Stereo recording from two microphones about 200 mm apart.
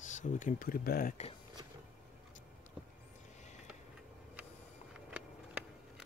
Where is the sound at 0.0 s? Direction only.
40° left (ahead or behind).